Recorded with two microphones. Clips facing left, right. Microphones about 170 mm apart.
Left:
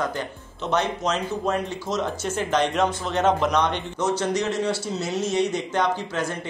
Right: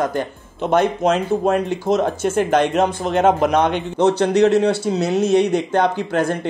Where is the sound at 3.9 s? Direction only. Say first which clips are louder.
Right 10 dB; 60° right (ahead or behind).